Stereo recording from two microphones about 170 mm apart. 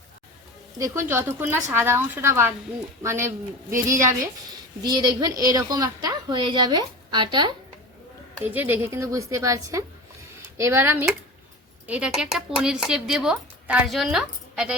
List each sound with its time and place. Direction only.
0.8 s a woman's voice: 15° right (ahead or behind)
8.4 s a woman's voice: 10° right (ahead or behind)